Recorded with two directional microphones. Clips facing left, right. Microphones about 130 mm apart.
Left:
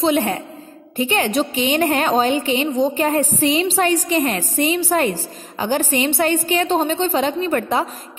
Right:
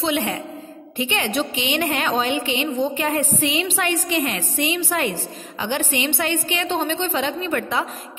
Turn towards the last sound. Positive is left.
turn(degrees=35)  # may be behind; listen again after turning